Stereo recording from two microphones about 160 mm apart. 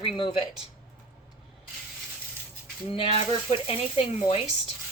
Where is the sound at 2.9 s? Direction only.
35° left (ahead or behind).